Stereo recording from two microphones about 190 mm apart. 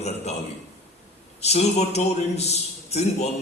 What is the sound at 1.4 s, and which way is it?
A man's voice, 35° left (ahead or behind).